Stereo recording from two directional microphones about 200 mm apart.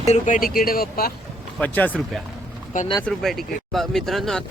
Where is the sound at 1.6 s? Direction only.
10° left (ahead or behind).